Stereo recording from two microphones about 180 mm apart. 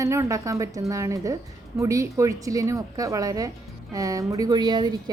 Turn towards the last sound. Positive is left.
turn(degrees=-25)  # may be behind; listen again after turning